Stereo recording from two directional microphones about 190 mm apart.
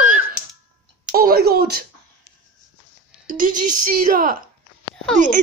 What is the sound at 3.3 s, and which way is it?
A woman's voice, 45° right (ahead or behind).